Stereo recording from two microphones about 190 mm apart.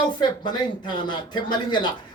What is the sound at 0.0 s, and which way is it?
Speech, 25° left (ahead or behind).